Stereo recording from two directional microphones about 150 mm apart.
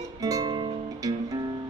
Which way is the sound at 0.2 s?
25° right (ahead or behind).